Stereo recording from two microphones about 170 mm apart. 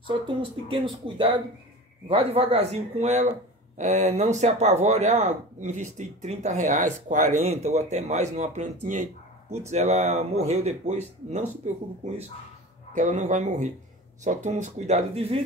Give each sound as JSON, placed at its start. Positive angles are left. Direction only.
{"t": 0.0, "sound": "speech", "side_deg": -30}
{"t": 12.9, "sound": "speech", "side_deg": -45}